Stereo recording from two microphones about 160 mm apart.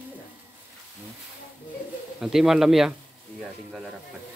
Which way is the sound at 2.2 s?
Centre (ahead or behind).